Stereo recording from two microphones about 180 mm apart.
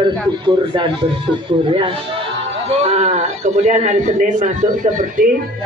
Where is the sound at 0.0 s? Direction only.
25° right (ahead or behind); by 5.2 s 45° right (ahead or behind).